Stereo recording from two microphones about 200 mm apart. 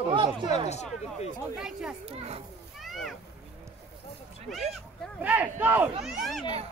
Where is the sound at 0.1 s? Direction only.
25° right (ahead or behind).